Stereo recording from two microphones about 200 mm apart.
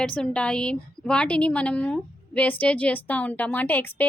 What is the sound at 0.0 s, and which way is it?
A woman's voice, 5° left (ahead or behind).